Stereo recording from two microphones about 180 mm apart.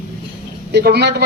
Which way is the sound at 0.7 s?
65° right (ahead or behind).